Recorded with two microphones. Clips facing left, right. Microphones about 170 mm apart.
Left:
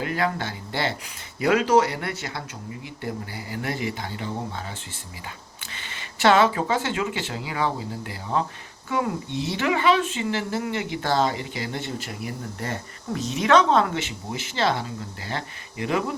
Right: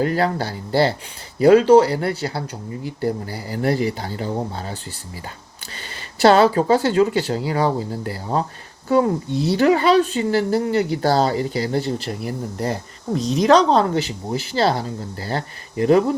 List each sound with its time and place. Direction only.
0.0 s speech: 35° right (ahead or behind)